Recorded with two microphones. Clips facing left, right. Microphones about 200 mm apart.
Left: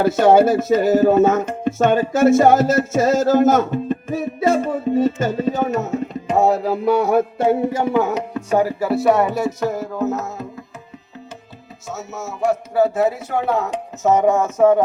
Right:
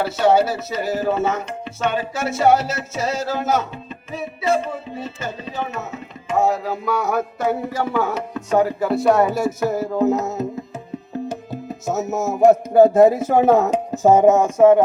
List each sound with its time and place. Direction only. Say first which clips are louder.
0.0 s speech: left 4 dB; 50° left (ahead or behind); by 8.4 s 20° left (ahead or behind)
8.4 s speech: even; 10° left (ahead or behind); by 10.4 s 15° right (ahead or behind)
11.9 s speech: right 8 dB; 40° right (ahead or behind)
12.3 s music: right 7 dB; 50° right (ahead or behind)
13.1 s speech: right 6 dB; 45° right (ahead or behind); by 14.8 s 10° right (ahead or behind)